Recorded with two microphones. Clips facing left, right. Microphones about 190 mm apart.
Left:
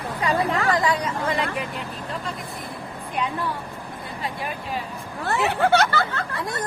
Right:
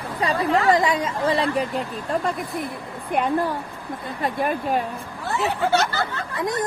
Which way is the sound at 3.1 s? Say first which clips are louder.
Right 6 dB; 55° right (ahead or behind).